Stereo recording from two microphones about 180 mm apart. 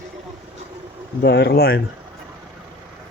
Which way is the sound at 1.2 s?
65° left (ahead or behind).